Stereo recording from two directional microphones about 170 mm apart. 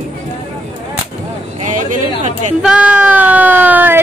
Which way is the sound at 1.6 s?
50° right (ahead or behind).